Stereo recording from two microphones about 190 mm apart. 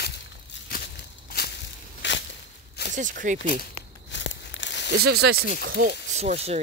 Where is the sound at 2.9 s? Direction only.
45° right (ahead or behind).